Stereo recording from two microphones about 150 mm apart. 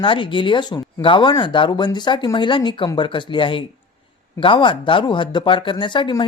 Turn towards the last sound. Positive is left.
turn(degrees=30)  # may be behind; listen again after turning